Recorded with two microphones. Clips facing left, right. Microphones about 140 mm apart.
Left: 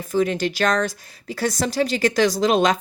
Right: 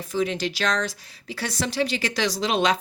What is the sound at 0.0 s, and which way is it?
Speech, 50° left (ahead or behind).